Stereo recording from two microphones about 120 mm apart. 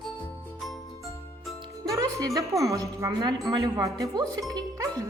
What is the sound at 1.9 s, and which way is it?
Speech, 30° right (ahead or behind).